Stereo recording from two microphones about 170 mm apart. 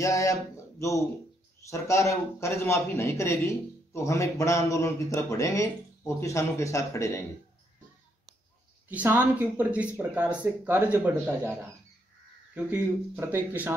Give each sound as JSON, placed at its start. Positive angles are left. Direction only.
{"t": 0.0, "sound": "a man's voice", "side_deg": 20}
{"t": 8.8, "sound": "speech", "side_deg": -10}
{"t": 12.5, "sound": "speech", "side_deg": -10}